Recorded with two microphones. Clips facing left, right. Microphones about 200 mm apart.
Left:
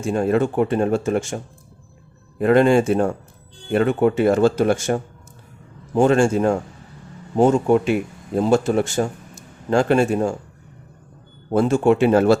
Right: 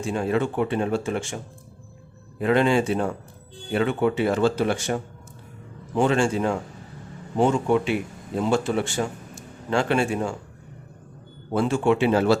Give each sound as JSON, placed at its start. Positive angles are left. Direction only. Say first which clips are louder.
{"t": 0.0, "sound": "speech", "louder": "left 5 dB", "side_deg": 45}
{"t": 2.4, "sound": "speech", "louder": "left 5 dB", "side_deg": 45}
{"t": 11.5, "sound": "speech", "louder": "left 5 dB", "side_deg": 40}